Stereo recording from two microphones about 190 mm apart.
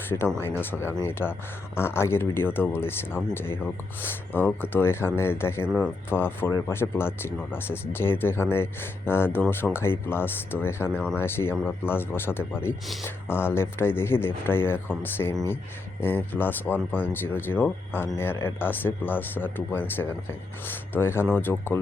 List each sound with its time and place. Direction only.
0.1 s speech: 10° left (ahead or behind)
5.6 s speech: 5° right (ahead or behind)
6.1 s speech: 10° left (ahead or behind)